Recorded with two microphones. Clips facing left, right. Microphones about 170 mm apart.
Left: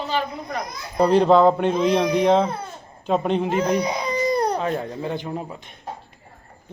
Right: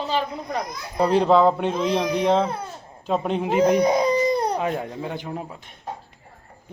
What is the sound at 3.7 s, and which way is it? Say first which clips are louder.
Speech: right 4 dB; 50° right (ahead or behind).